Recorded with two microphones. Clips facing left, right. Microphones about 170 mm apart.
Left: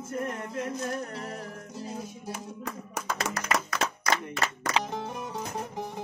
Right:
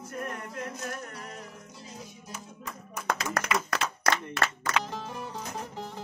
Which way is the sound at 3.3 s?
65° right (ahead or behind).